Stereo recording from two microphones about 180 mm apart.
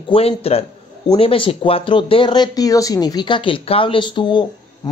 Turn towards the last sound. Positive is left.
turn(degrees=25)  # may be behind; listen again after turning